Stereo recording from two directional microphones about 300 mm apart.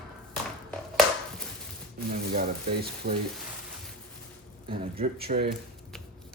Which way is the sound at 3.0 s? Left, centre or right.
Right.